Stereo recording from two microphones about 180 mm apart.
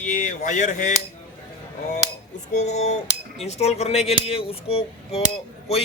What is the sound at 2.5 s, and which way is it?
Speech, 40° left (ahead or behind).